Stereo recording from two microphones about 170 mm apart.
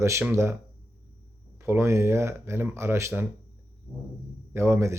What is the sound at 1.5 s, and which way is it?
Speech, 15° right (ahead or behind).